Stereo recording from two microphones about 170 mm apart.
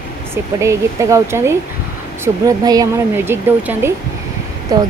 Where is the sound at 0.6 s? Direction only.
15° right (ahead or behind).